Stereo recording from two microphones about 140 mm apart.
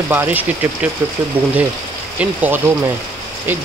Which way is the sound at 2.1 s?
10° right (ahead or behind).